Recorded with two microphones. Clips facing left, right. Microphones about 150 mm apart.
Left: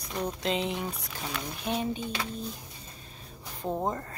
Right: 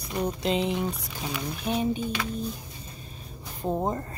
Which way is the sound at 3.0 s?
10° right (ahead or behind).